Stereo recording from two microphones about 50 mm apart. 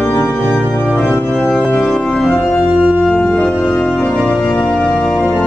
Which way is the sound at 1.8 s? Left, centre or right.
Centre.